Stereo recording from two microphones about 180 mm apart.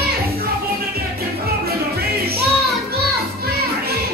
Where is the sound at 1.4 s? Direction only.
60° right (ahead or behind).